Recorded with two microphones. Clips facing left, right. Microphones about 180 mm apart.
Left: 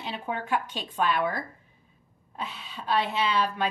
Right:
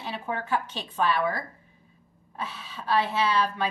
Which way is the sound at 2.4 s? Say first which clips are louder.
Right 1 dB; 15° left (ahead or behind).